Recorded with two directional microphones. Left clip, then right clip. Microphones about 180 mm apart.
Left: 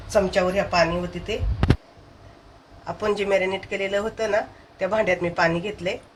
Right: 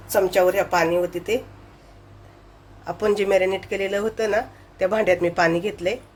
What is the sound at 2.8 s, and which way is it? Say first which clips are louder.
Speech: right 3 dB; 70° right (ahead or behind).